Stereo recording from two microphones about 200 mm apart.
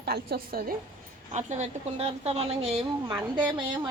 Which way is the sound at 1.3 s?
35° right (ahead or behind).